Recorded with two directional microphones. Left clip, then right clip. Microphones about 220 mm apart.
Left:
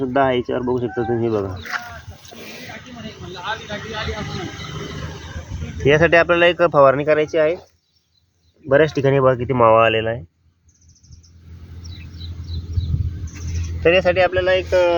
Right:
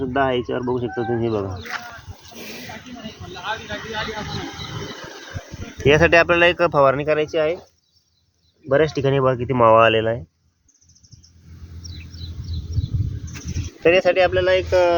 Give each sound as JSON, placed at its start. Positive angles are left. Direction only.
{"t": 0.0, "sound": "speech", "side_deg": 35}
{"t": 3.0, "sound": "a sound", "side_deg": 35}
{"t": 5.8, "sound": "speech", "side_deg": -5}
{"t": 6.7, "sound": "speech", "side_deg": 20}
{"t": 8.6, "sound": "speech", "side_deg": 30}
{"t": 9.2, "sound": "speech", "side_deg": 10}
{"t": 9.5, "sound": "speech", "side_deg": -5}
{"t": 9.9, "sound": "speech", "side_deg": -20}
{"t": 13.8, "sound": "speech", "side_deg": -10}